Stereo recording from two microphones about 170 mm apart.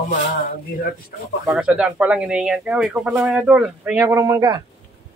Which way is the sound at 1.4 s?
5° right (ahead or behind).